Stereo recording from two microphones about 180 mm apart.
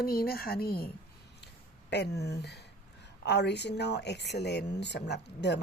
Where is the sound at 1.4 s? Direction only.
65° left (ahead or behind).